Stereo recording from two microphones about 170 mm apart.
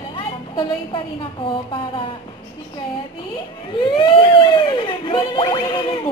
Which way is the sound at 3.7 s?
25° left (ahead or behind).